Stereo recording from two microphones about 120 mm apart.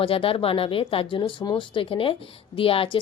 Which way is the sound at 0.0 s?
50° left (ahead or behind).